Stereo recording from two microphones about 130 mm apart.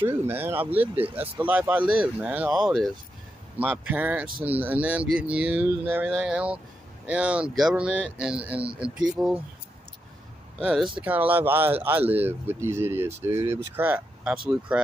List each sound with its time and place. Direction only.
0.0 s speech: 15° right (ahead or behind)
10.6 s speech: 10° right (ahead or behind)